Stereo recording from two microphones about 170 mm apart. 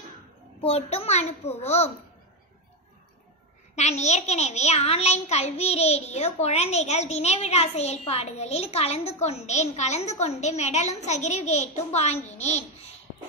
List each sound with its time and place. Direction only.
0.6 s a child's voice: 35° left (ahead or behind)
3.7 s a child's voice: 40° left (ahead or behind)